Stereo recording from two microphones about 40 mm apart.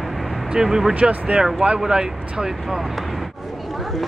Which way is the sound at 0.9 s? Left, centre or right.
Right.